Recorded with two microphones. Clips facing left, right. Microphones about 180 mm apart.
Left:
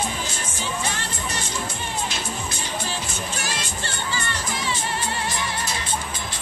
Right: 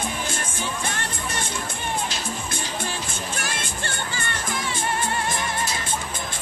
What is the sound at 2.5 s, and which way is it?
Music, 55° right (ahead or behind).